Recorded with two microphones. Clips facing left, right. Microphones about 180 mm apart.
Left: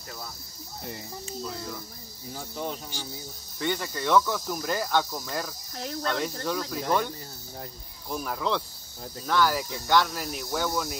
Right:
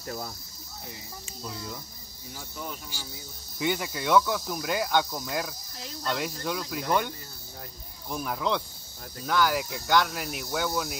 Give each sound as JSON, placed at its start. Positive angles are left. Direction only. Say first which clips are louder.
{"t": 2.3, "sound": "speech", "louder": "left 5 dB", "side_deg": 30}
{"t": 3.5, "sound": "speech", "louder": "right 1 dB", "side_deg": -10}
{"t": 8.1, "sound": "speech", "louder": "even", "side_deg": 0}